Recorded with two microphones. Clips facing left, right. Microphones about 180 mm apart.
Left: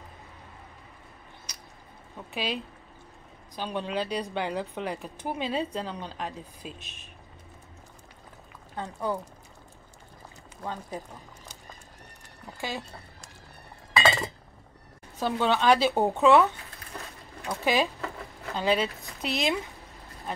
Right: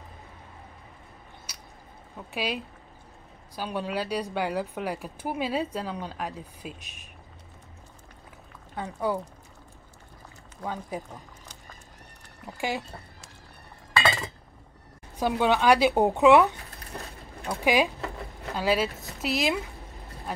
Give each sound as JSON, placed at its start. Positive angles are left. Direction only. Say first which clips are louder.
{"t": 2.3, "sound": "a woman's voice", "louder": "right 1 dB", "side_deg": -5}
{"t": 8.7, "sound": "a woman's voice", "louder": "right 2 dB", "side_deg": -10}
{"t": 10.6, "sound": "a woman's voice", "louder": "right 2 dB", "side_deg": -10}
{"t": 12.5, "sound": "speech", "louder": "right 4 dB", "side_deg": -15}
{"t": 15.1, "sound": "a woman's voice", "louder": "right 2 dB", "side_deg": -10}
{"t": 16.9, "sound": "a sound", "louder": "right 2 dB", "side_deg": -20}
{"t": 18.6, "sound": "speech", "louder": "right 1 dB", "side_deg": -5}